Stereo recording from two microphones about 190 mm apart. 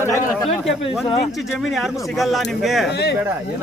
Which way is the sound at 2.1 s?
Centre (ahead or behind).